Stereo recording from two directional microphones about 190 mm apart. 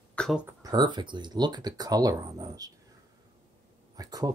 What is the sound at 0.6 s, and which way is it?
Speech, 20° right (ahead or behind).